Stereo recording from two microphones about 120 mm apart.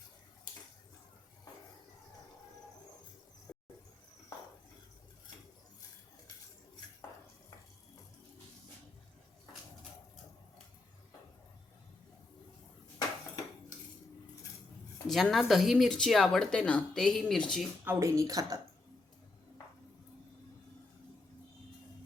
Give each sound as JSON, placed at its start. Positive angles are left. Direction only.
{"t": 15.0, "sound": "speech", "side_deg": 0}
{"t": 17.8, "sound": "a woman's voice", "side_deg": -25}